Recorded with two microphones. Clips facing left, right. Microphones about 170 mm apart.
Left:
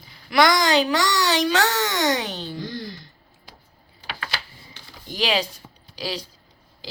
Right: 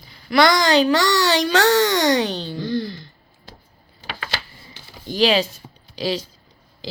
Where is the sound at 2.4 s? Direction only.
25° right (ahead or behind).